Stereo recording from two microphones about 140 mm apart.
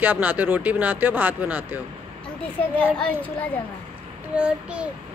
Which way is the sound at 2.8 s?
10° left (ahead or behind).